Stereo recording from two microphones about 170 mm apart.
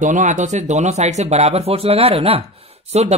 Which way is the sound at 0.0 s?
45° right (ahead or behind).